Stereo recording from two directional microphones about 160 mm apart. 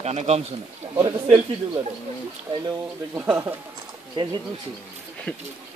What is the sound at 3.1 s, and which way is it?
Speech, 10° right (ahead or behind).